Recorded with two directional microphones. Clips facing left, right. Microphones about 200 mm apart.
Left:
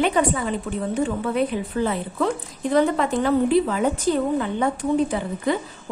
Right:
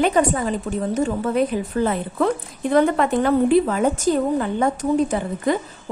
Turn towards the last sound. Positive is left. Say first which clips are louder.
# right 2 dB
turn(degrees=-45)  # may be behind; listen again after turning